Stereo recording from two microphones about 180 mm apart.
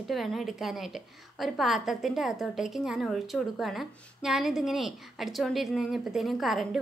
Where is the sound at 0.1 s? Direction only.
Centre (ahead or behind).